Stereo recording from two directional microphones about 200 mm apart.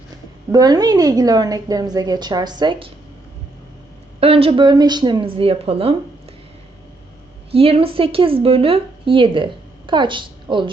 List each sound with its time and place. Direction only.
0.5 s a woman's voice: 20° right (ahead or behind)
4.2 s a woman's voice: 30° right (ahead or behind)
7.5 s speech: 30° right (ahead or behind)